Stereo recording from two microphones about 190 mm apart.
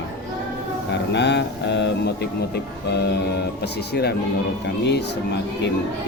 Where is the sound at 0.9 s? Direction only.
65° left (ahead or behind).